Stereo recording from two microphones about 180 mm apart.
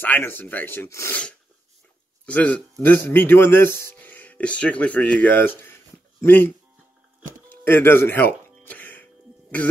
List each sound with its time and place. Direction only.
0.0 s speech: 10° left (ahead or behind)
7.2 s a sound: 50° right (ahead or behind)
7.6 s speech: 10° left (ahead or behind)
8.5 s music: 10° left (ahead or behind)